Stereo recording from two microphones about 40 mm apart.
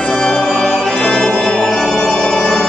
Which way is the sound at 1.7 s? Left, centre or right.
Centre.